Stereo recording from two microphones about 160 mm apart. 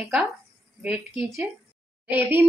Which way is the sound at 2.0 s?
10° right (ahead or behind).